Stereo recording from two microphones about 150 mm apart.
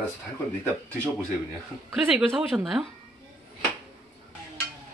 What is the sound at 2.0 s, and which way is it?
Speech, 10° right (ahead or behind).